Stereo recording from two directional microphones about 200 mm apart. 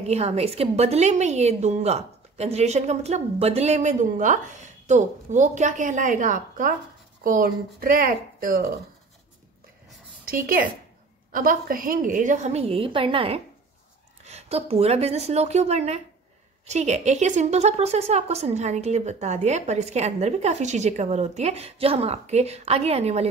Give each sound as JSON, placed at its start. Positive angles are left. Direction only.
{"t": 0.1, "sound": "a woman's voice", "side_deg": -30}
{"t": 10.2, "sound": "a woman's voice", "side_deg": -45}